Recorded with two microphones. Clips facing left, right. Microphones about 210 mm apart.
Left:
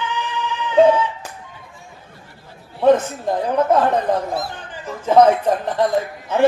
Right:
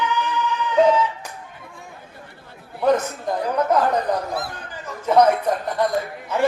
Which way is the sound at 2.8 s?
25° left (ahead or behind).